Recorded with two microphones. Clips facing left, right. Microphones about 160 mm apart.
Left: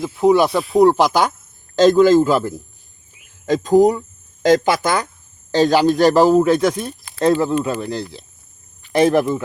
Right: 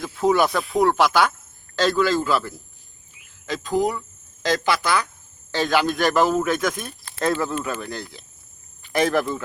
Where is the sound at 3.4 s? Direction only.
45° left (ahead or behind).